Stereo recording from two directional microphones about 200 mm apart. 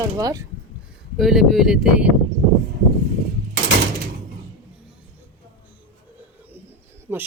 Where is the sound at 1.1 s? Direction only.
Centre (ahead or behind).